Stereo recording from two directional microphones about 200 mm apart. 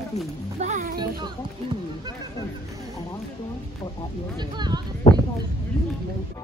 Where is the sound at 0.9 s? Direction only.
20° right (ahead or behind).